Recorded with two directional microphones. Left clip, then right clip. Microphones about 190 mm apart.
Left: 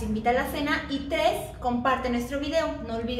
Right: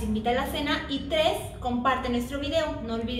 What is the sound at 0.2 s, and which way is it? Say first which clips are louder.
A woman's voice: left 2 dB; 15° left (ahead or behind).